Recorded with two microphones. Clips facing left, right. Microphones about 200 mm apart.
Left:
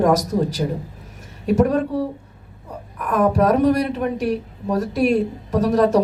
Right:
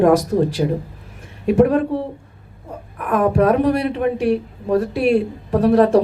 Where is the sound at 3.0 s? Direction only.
40° left (ahead or behind).